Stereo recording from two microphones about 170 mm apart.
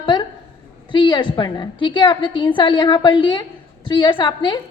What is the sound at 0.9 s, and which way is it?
A woman's voice, 25° left (ahead or behind).